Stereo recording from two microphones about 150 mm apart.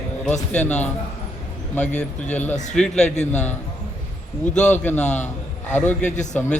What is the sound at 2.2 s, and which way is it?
Speech, 50° left (ahead or behind).